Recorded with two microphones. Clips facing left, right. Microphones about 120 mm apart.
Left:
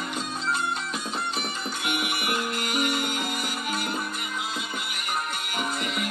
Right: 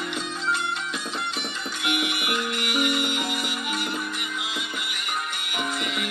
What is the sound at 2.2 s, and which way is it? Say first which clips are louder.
Music: even; 40° left (ahead or behind).